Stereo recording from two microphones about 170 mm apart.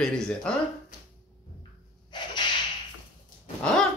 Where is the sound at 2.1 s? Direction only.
25° left (ahead or behind).